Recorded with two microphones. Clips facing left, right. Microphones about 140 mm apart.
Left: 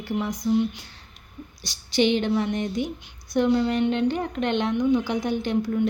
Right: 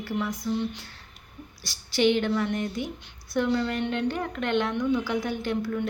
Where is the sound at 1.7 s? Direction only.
20° left (ahead or behind).